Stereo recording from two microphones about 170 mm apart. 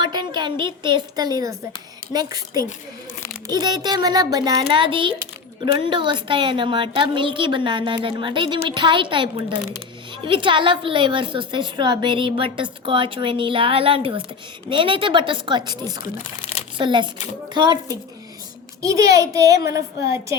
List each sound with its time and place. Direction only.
0.0 s a woman's voice: 25° right (ahead or behind)
18.8 s a woman's voice: 20° right (ahead or behind)